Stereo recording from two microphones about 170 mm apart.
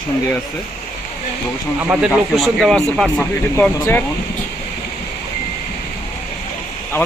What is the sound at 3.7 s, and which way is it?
Speech, 20° left (ahead or behind).